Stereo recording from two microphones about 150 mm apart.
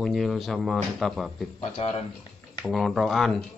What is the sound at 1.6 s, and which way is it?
Speech, 45° left (ahead or behind).